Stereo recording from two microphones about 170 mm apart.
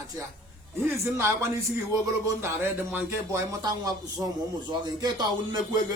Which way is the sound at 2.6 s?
15° right (ahead or behind).